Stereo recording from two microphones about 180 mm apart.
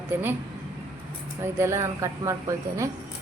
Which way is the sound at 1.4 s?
15° right (ahead or behind).